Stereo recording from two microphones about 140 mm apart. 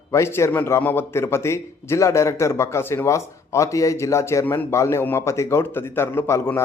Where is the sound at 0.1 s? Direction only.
20° left (ahead or behind).